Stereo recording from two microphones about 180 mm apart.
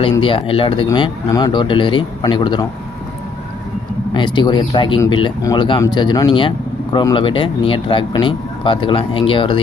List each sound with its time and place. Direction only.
0.0 s speech: 30° left (ahead or behind)
4.1 s speech: 25° left (ahead or behind)